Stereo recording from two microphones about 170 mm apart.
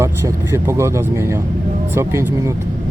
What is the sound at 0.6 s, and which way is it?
Speech, 15° right (ahead or behind).